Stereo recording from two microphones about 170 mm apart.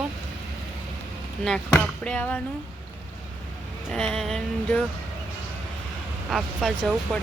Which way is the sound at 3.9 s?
5° left (ahead or behind).